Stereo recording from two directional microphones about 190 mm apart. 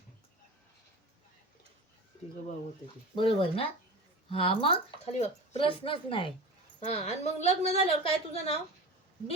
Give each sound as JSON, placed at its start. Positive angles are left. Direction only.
{"t": 3.2, "sound": "a woman's voice", "side_deg": 25}